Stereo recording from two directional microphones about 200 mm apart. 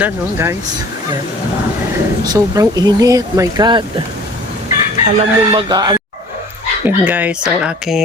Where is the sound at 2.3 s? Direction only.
15° right (ahead or behind).